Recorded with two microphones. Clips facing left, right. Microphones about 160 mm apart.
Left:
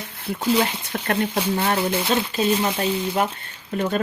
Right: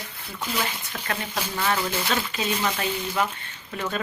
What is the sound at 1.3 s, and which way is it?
Speech, 30° left (ahead or behind).